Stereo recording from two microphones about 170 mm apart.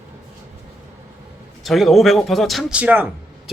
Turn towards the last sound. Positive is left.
turn(degrees=-10)  # may be behind; listen again after turning